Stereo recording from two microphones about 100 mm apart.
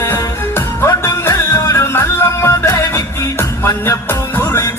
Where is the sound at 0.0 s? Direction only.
25° left (ahead or behind).